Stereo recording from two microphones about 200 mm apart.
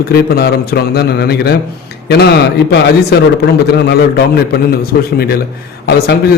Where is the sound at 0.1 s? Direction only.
50° left (ahead or behind).